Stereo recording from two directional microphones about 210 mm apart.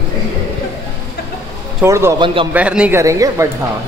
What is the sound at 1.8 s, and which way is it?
Speech, 15° right (ahead or behind).